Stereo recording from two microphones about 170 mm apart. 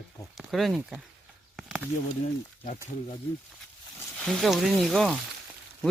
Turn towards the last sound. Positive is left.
turn(degrees=0)  # may be behind; listen again after turning